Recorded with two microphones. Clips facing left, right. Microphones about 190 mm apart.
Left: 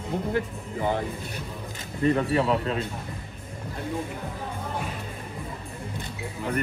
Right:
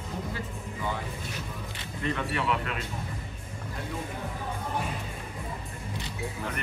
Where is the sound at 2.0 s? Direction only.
35° left (ahead or behind).